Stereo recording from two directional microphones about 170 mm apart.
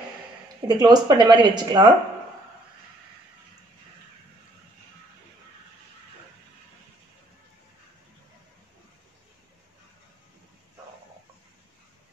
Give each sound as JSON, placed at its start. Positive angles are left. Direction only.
{"t": 0.7, "sound": "speech", "side_deg": -25}